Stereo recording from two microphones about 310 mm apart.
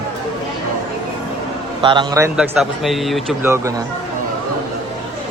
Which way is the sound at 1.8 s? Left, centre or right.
Centre.